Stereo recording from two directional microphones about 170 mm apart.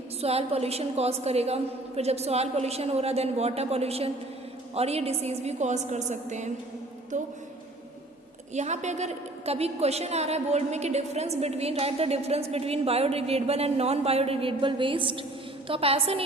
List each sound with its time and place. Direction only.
0.2 s a woman's voice: 35° right (ahead or behind)
8.5 s a woman's voice: 45° right (ahead or behind)